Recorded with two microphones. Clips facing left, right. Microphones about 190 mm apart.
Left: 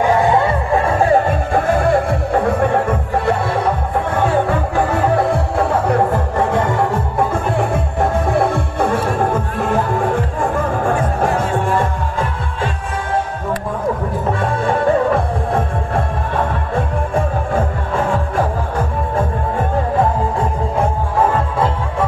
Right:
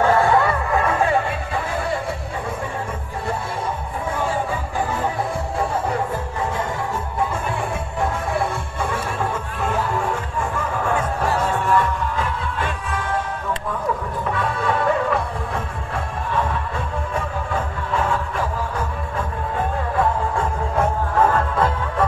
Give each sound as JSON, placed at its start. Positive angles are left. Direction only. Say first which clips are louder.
{"t": 0.0, "sound": "music", "louder": "left 3 dB", "side_deg": 15}
{"t": 14.3, "sound": "music", "louder": "left 4 dB", "side_deg": 45}